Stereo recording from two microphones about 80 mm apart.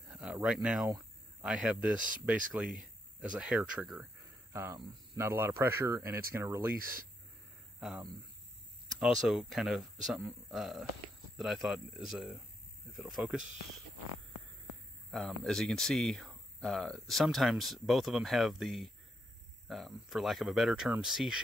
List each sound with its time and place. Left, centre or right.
0.1 s a sound: centre
1.4 s speech: centre
2.7 s a sound: centre
3.4 s speech: centre
4.5 s speech: right
9.0 s speech: centre
15.0 s speech: centre